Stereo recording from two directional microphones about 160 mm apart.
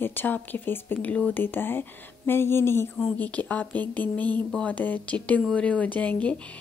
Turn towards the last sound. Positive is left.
turn(degrees=10)  # may be behind; listen again after turning